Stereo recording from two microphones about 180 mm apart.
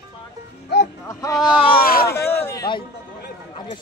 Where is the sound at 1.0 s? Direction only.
20° left (ahead or behind).